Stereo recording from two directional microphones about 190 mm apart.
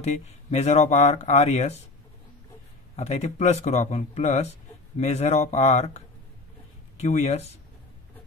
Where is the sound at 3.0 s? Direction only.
35° left (ahead or behind).